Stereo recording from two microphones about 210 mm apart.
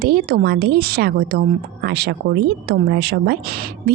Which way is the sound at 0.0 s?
50° right (ahead or behind).